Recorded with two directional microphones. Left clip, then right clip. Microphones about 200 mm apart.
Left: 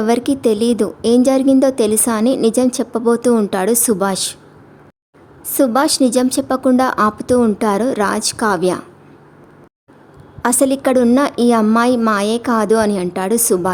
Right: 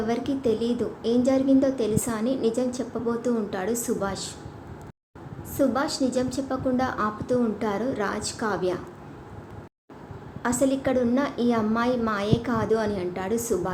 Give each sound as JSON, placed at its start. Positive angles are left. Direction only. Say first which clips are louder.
{"t": 0.0, "sound": "a woman's voice", "louder": "left 11 dB", "side_deg": 65}
{"t": 5.5, "sound": "a woman's voice", "louder": "left 11 dB", "side_deg": 60}
{"t": 10.4, "sound": "a woman's voice", "louder": "left 9 dB", "side_deg": 60}